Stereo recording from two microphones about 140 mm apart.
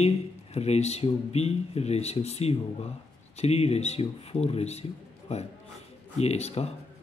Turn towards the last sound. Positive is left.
turn(degrees=50)  # may be behind; listen again after turning